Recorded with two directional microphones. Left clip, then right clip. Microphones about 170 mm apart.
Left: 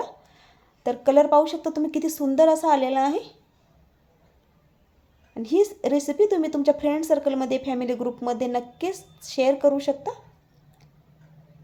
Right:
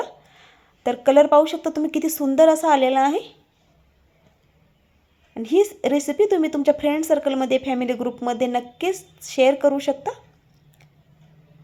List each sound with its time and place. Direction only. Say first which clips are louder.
0.0 s speech: right 3 dB; 15° right (ahead or behind)
5.3 s a woman's voice: right 3 dB; 15° right (ahead or behind)